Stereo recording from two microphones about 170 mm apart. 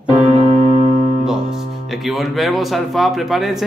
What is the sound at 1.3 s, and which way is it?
Speech, centre (ahead or behind).